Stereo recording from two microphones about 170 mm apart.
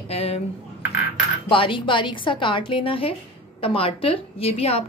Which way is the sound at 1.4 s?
30° left (ahead or behind).